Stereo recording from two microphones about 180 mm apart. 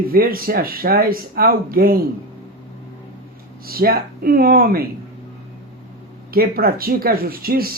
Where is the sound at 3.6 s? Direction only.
55° right (ahead or behind).